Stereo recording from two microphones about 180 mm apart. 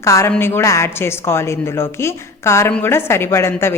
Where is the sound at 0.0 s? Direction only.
15° left (ahead or behind).